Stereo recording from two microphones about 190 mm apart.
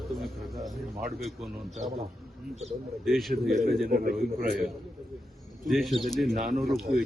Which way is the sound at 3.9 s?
50° right (ahead or behind).